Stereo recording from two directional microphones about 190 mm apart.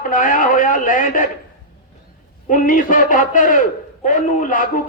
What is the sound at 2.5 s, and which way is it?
A man's voice, 45° left (ahead or behind).